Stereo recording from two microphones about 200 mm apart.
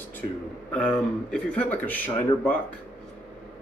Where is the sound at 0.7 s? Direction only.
5° left (ahead or behind).